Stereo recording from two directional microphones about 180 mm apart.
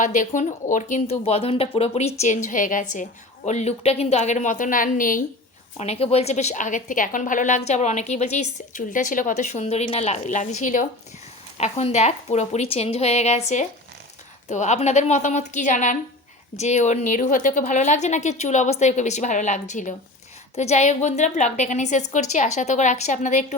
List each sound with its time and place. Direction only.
0.0 s a woman's voice: 45° left (ahead or behind)
5.8 s a woman's voice: 35° left (ahead or behind)